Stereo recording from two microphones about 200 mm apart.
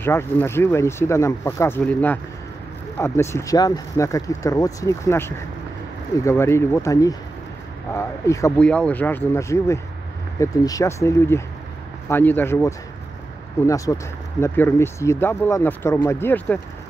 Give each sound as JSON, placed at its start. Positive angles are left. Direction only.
{"t": 0.0, "sound": "speech", "side_deg": 10}